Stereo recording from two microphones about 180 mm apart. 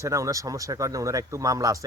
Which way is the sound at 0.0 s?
15° right (ahead or behind).